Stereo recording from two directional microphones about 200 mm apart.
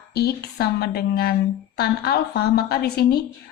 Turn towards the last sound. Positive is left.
turn(degrees=50)  # may be behind; listen again after turning